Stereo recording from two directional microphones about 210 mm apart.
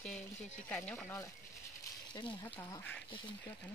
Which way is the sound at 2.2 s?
20° left (ahead or behind).